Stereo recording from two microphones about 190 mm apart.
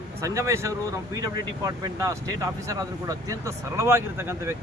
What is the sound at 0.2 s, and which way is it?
Speech, 15° right (ahead or behind).